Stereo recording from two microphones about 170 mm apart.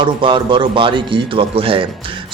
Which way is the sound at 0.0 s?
30° right (ahead or behind).